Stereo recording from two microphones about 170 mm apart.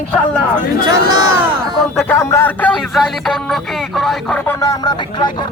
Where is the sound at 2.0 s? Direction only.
15° left (ahead or behind).